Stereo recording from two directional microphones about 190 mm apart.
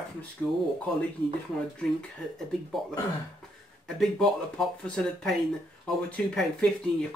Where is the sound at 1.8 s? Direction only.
5° left (ahead or behind).